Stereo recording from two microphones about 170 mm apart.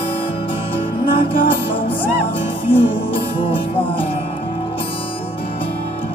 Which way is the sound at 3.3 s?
35° left (ahead or behind).